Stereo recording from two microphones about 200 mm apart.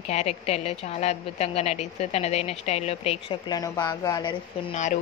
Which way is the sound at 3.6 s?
20° left (ahead or behind).